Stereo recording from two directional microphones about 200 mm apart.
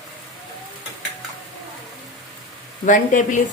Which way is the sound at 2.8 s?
40° left (ahead or behind).